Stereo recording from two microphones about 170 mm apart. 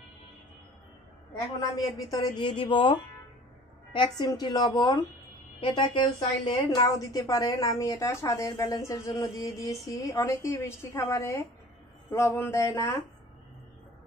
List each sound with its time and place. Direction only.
2.0 s a woman's voice: 20° left (ahead or behind)